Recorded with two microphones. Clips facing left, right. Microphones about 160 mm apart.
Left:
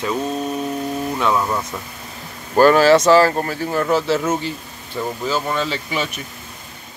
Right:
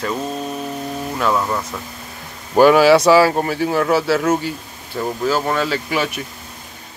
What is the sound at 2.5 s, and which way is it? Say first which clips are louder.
Speech: right 1 dB; 10° right (ahead or behind).